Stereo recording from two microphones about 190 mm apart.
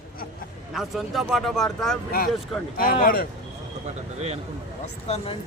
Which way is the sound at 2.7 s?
50° left (ahead or behind).